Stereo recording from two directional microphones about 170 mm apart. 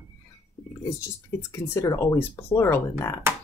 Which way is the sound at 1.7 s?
20° left (ahead or behind).